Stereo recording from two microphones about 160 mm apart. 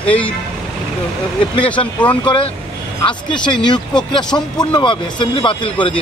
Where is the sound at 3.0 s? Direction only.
30° left (ahead or behind).